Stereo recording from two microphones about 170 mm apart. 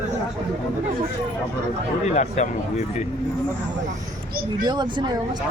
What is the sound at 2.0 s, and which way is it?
Speech, 40° left (ahead or behind).